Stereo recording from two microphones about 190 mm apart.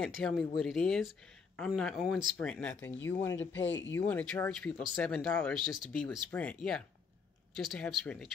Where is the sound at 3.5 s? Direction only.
75° left (ahead or behind).